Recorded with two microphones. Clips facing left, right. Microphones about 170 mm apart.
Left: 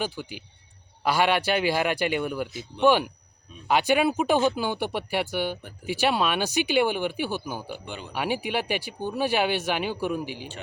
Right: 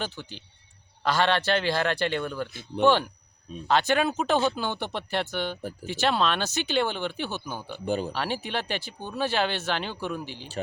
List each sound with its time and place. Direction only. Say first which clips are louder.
0.0 s speech: left 4 dB; 10° left (ahead or behind)
2.5 s speech: right 4 dB; 55° right (ahead or behind)
2.8 s speech: left 1 dB; 10° left (ahead or behind)
7.9 s speech: right 10 dB; 40° right (ahead or behind)
8.1 s speech: left 3 dB; 10° left (ahead or behind)